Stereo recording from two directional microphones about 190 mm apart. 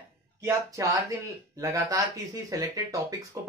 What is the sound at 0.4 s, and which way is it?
Speech, 15° right (ahead or behind).